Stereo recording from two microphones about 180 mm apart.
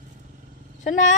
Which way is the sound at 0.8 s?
45° left (ahead or behind).